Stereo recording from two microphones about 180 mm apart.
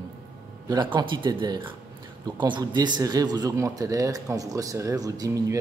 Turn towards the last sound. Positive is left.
turn(degrees=-20)  # may be behind; listen again after turning